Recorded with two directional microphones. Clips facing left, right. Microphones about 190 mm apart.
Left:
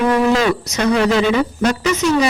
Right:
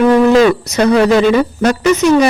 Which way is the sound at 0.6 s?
60° right (ahead or behind).